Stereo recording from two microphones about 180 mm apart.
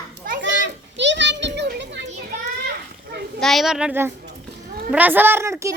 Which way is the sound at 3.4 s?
Centre (ahead or behind).